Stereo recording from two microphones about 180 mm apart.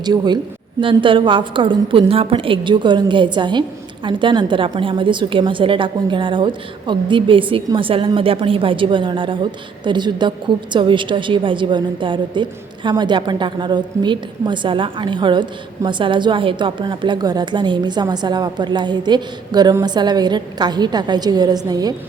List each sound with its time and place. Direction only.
0.0 s a woman's voice: 25° right (ahead or behind)